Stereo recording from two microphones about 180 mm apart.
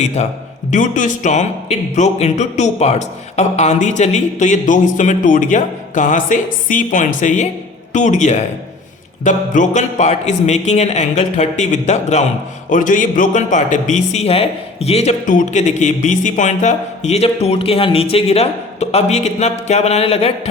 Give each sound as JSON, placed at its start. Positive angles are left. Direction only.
{"t": 0.2, "sound": "speech", "side_deg": 35}